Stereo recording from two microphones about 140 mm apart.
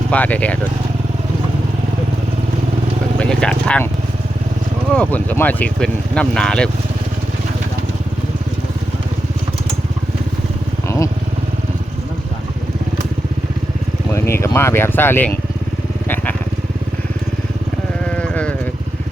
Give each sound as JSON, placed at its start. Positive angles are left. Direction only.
{"t": 0.1, "sound": "speech", "side_deg": 10}
{"t": 3.2, "sound": "speech", "side_deg": 5}
{"t": 4.9, "sound": "speech", "side_deg": 10}
{"t": 10.8, "sound": "motorcycle", "side_deg": 20}
{"t": 14.1, "sound": "speech", "side_deg": 20}
{"t": 16.0, "sound": "vehicle", "side_deg": 15}
{"t": 18.0, "sound": "sheep", "side_deg": 10}